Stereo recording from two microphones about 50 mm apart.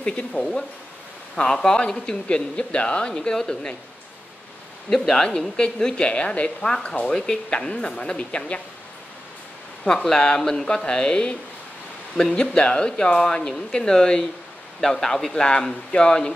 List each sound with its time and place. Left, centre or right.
0.0 s speech: centre
4.8 s a woman's voice: centre; by 8.5 s left
9.8 s speech: centre